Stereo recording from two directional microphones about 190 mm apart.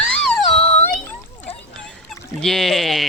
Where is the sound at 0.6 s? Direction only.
35° left (ahead or behind).